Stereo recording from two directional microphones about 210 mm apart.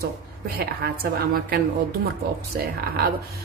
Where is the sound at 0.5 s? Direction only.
45° right (ahead or behind).